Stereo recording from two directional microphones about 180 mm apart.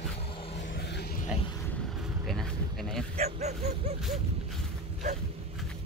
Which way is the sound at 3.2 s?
40° right (ahead or behind).